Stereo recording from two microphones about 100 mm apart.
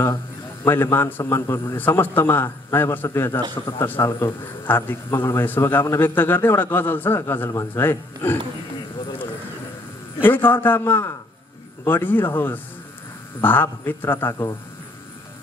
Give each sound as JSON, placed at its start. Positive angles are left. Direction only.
{"t": 0.7, "sound": "a man's voice", "side_deg": 25}
{"t": 10.2, "sound": "a man's voice", "side_deg": 20}